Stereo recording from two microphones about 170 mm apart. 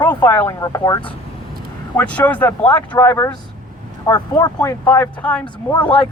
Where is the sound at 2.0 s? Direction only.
10° left (ahead or behind).